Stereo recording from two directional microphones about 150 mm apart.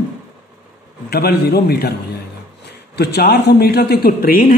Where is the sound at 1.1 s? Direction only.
90° left.